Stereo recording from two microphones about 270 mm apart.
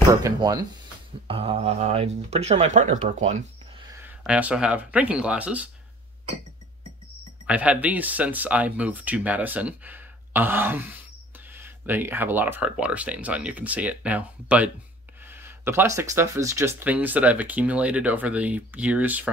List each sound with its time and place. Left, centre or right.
0.1 s speech: centre
4.0 s speech: centre
7.4 s speech: centre